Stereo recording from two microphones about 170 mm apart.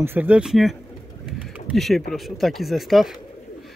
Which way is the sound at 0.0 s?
10° right (ahead or behind).